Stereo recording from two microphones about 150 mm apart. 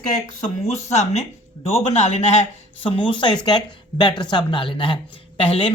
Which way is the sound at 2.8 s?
35° left (ahead or behind).